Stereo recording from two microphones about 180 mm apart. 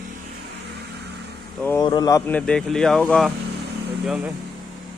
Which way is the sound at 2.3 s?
5° left (ahead or behind).